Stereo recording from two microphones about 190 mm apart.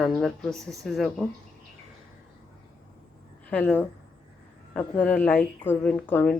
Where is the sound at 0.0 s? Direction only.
Centre (ahead or behind).